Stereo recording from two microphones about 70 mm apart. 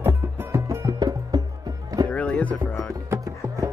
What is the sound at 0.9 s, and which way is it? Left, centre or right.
Music, right.